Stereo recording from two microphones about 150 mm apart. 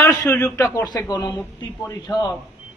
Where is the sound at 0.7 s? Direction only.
25° left (ahead or behind).